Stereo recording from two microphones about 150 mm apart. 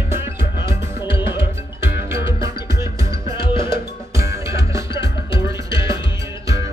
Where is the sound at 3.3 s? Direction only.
35° left (ahead or behind).